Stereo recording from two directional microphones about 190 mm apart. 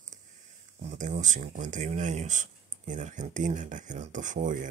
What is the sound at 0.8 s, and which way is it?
Speech, 40° right (ahead or behind).